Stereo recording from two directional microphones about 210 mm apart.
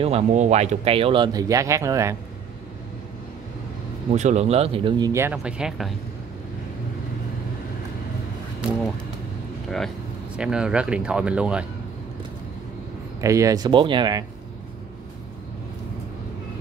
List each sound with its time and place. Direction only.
0.0 s speech: 30° right (ahead or behind); by 2.1 s 15° right (ahead or behind)
4.1 s speech: 35° right (ahead or behind); by 5.9 s centre (ahead or behind)
10.3 s speech: 5° right (ahead or behind)
13.2 s speech: 15° right (ahead or behind)